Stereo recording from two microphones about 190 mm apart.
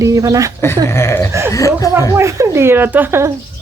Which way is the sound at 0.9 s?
15° left (ahead or behind).